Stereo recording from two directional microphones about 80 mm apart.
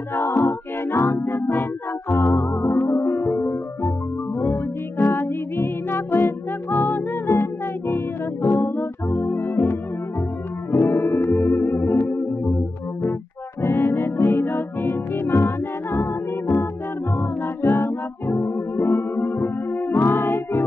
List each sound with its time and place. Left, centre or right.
0.1 s music: left
11.9 s music: left